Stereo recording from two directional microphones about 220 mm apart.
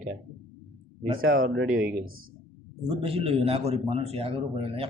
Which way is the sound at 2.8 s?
25° right (ahead or behind).